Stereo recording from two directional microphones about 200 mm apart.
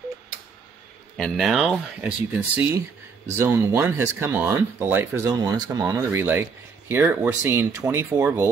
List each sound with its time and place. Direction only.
1.1 s speech: centre (ahead or behind)